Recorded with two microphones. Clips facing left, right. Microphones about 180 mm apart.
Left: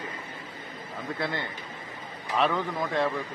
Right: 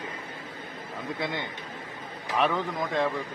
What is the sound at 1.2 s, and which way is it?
Speech, 15° right (ahead or behind).